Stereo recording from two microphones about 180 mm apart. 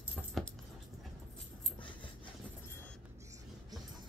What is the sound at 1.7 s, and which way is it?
Dog, 25° left (ahead or behind).